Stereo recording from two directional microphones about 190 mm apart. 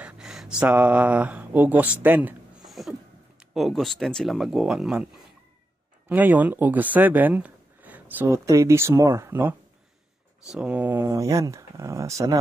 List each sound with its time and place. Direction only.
0.0 s speech: 5° right (ahead or behind)